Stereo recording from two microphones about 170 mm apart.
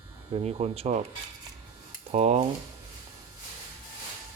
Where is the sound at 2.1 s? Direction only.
40° right (ahead or behind).